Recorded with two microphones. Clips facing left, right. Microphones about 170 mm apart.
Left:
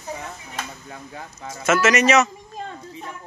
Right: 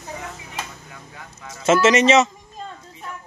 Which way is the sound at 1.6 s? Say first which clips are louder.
Right 3 dB; 30° right (ahead or behind).